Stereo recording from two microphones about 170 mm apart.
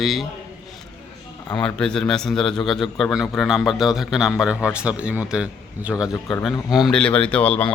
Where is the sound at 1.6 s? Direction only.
5° left (ahead or behind).